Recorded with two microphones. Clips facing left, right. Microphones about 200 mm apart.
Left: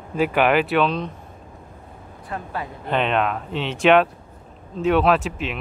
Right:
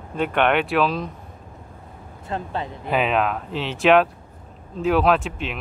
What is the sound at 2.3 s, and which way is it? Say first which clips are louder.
Speech: right 2 dB; 25° right (ahead or behind).